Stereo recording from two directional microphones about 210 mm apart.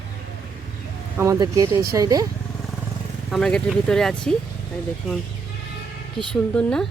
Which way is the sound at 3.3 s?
Centre (ahead or behind).